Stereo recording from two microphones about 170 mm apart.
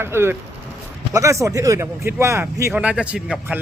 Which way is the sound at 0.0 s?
15° right (ahead or behind).